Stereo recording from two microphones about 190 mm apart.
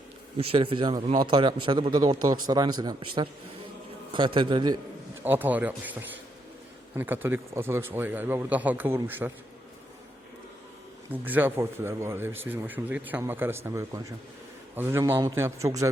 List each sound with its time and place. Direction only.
0.3 s speech: 30° right (ahead or behind)
5.2 s speech: 10° right (ahead or behind)
11.1 s speech: 10° right (ahead or behind)